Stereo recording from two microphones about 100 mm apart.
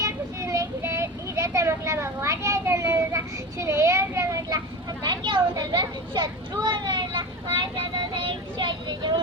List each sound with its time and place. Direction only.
0.0 s child singing: 35° right (ahead or behind)
3.6 s speech: 30° right (ahead or behind)
5.0 s speech: 50° right (ahead or behind)